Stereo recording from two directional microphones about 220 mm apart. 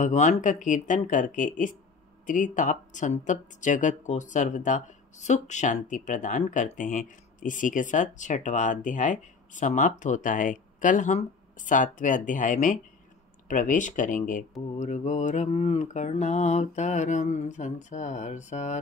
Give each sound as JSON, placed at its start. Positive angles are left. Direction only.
{"t": 0.0, "sound": "speech", "side_deg": 30}